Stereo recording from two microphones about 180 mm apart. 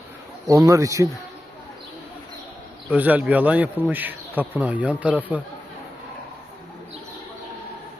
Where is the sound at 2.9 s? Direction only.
10° right (ahead or behind).